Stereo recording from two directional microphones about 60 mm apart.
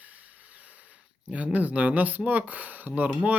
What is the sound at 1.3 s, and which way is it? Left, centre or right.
Speech, right.